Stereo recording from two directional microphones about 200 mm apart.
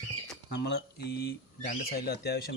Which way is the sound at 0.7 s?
55° left (ahead or behind).